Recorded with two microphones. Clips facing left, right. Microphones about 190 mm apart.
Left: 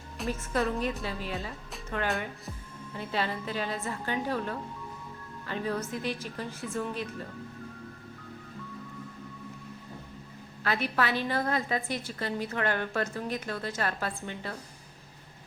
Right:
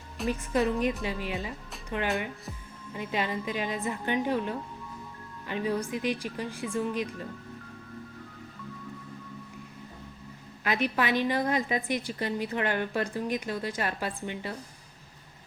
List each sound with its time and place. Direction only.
0.3 s a woman's voice: 15° right (ahead or behind)
3.0 s a woman's voice: 15° right (ahead or behind)
10.6 s a woman's voice: 15° right (ahead or behind)